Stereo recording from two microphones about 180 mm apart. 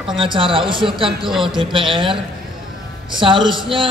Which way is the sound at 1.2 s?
Centre (ahead or behind).